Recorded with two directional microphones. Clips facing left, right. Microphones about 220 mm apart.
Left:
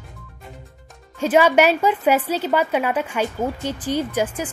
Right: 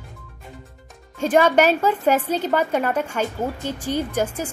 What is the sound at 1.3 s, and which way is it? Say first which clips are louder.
A woman's voice: left 1 dB; 10° left (ahead or behind).